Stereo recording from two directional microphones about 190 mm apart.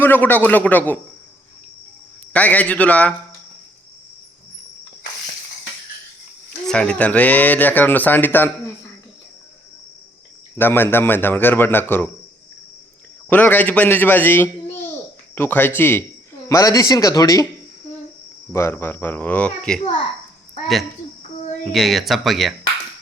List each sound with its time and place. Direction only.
0.0 s speech: 10° left (ahead or behind)
2.3 s speech: 10° left (ahead or behind)
6.7 s speech: 5° left (ahead or behind)
10.6 s speech: 10° left (ahead or behind)
13.3 s speech: 10° left (ahead or behind)
18.5 s speech: 15° left (ahead or behind)
21.6 s speech: centre (ahead or behind)